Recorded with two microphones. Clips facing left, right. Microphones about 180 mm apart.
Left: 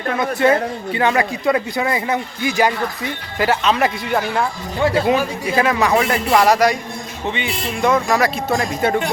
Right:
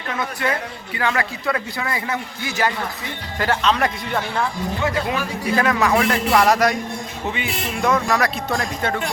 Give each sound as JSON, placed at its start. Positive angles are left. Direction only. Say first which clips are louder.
{"t": 0.2, "sound": "a man's voice", "louder": "left 9 dB", "side_deg": 25}
{"t": 4.8, "sound": "a man's voice", "louder": "left 8 dB", "side_deg": 30}
{"t": 5.5, "sound": "speech", "louder": "left 2 dB", "side_deg": 5}